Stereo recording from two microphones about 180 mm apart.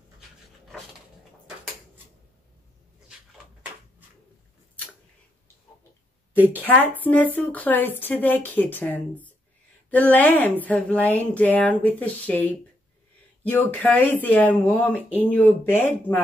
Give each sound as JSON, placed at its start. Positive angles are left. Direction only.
{"t": 6.3, "sound": "a woman's voice", "side_deg": -10}
{"t": 6.6, "sound": "a woman's voice", "side_deg": 10}